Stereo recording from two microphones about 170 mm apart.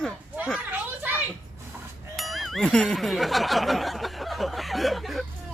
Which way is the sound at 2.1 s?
Centre (ahead or behind).